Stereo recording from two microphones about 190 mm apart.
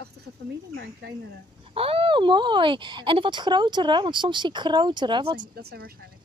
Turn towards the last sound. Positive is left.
turn(degrees=-55)  # may be behind; listen again after turning